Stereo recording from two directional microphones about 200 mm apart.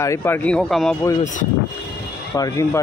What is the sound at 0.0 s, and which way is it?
Speech, 15° left (ahead or behind).